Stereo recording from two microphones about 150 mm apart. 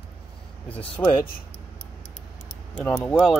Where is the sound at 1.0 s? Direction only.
15° left (ahead or behind).